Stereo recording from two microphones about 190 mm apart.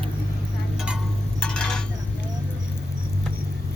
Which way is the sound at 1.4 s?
5° left (ahead or behind).